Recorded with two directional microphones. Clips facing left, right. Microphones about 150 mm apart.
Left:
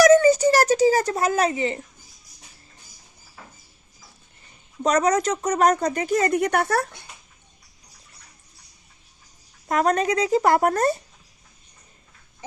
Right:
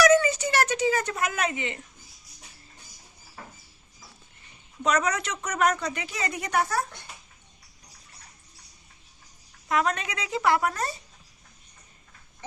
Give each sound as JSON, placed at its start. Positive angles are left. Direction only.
{"t": 0.0, "sound": "a sound", "side_deg": 40}
{"t": 4.8, "sound": "speech", "side_deg": 40}
{"t": 9.6, "sound": "speech", "side_deg": 40}